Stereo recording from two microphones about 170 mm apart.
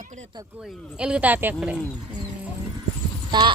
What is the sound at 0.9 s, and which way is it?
Speech, 5° right (ahead or behind).